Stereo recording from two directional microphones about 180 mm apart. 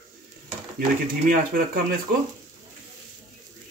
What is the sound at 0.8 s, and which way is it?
A man's voice, 50° right (ahead or behind).